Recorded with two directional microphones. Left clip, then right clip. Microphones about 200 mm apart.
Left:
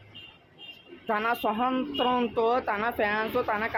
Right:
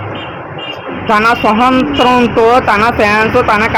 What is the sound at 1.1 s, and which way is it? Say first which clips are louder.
Speech: right 18 dB; 20° left (ahead or behind).